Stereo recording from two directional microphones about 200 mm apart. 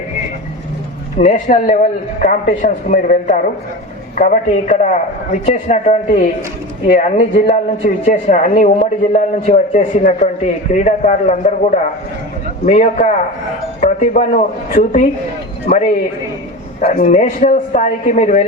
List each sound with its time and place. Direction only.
1.2 s a man's voice: 40° left (ahead or behind)
16.8 s a man's voice: 40° left (ahead or behind)